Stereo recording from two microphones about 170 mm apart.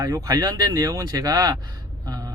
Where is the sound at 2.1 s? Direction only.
20° right (ahead or behind).